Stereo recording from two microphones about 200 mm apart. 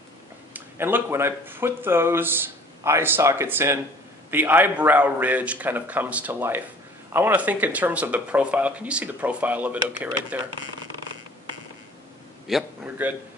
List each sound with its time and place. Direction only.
0.5 s speech: 10° right (ahead or behind)
12.4 s a man's voice: 5° right (ahead or behind)